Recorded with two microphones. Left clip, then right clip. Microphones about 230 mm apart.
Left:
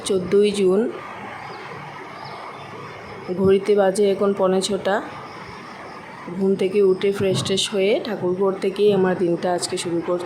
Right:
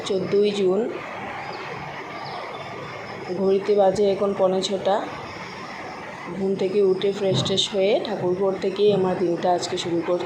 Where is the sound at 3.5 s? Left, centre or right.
Left.